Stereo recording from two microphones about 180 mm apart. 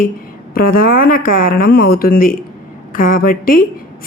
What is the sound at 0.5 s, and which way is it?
Speech, 50° left (ahead or behind).